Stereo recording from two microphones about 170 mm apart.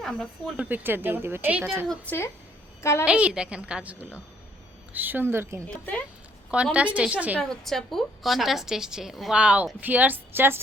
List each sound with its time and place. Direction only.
0.0 s a woman's voice: centre (ahead or behind)
0.5 s speech: 10° right (ahead or behind)
1.9 s speech: 10° left (ahead or behind)
3.1 s speech: 5° right (ahead or behind)
5.6 s speech: 10° left (ahead or behind)
6.5 s a woman's voice: 5° right (ahead or behind)